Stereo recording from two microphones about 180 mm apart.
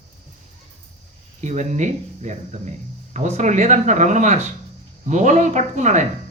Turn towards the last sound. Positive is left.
turn(degrees=-40)  # may be behind; listen again after turning